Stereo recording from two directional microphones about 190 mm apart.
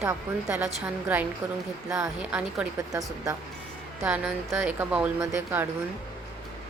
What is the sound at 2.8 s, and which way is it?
Speech, 20° right (ahead or behind).